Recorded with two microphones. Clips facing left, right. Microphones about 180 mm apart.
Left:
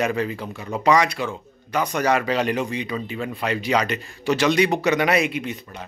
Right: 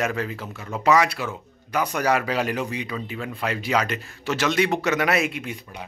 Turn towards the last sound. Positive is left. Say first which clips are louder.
# left 4 dB
turn(degrees=-10)  # may be behind; listen again after turning